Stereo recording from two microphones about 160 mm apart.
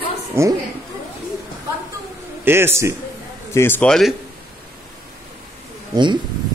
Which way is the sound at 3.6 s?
15° left (ahead or behind).